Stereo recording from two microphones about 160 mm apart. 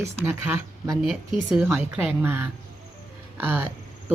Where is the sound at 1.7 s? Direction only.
15° right (ahead or behind).